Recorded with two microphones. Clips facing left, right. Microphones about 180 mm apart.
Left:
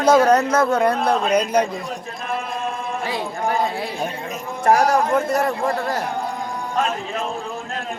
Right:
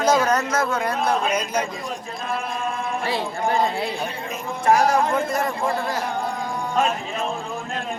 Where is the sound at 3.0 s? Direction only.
15° left (ahead or behind).